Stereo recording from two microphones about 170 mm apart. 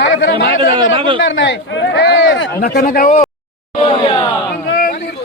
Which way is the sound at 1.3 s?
90° left.